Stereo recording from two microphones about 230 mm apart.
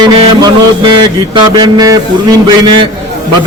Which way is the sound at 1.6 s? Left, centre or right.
Centre.